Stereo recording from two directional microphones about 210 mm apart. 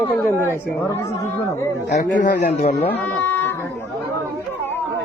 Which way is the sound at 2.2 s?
35° left (ahead or behind).